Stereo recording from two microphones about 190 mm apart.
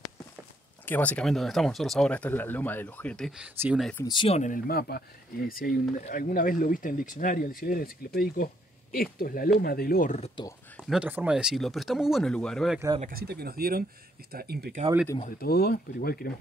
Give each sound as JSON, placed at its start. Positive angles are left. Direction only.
{"t": 0.8, "sound": "speech", "side_deg": 10}
{"t": 4.1, "sound": "speech", "side_deg": 25}
{"t": 4.4, "sound": "speech", "side_deg": 50}
{"t": 10.8, "sound": "speech", "side_deg": -5}
{"t": 13.1, "sound": "speech", "side_deg": -55}
{"t": 15.2, "sound": "speech", "side_deg": 50}